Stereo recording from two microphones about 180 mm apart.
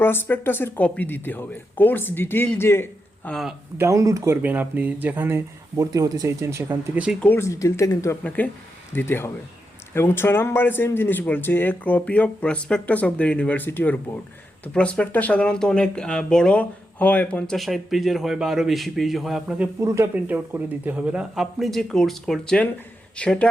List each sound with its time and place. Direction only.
0.0 s speech: 10° left (ahead or behind)
3.8 s speech: 15° right (ahead or behind)
7.2 s speech: 10° left (ahead or behind)